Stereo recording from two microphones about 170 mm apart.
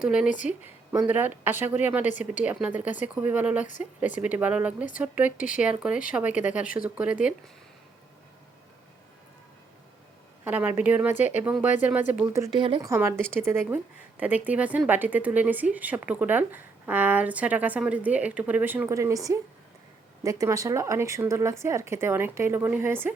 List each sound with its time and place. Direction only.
0.0 s a woman's voice: 5° right (ahead or behind)
2.0 s speech: 45° left (ahead or behind)
2.4 s a woman's voice: 10° right (ahead or behind)
3.7 s speech: 45° left (ahead or behind)
4.2 s a woman's voice: 10° right (ahead or behind)
10.4 s a woman's voice: 10° right (ahead or behind)
12.5 s speech: 30° right (ahead or behind)
12.8 s a woman's voice: 15° right (ahead or behind)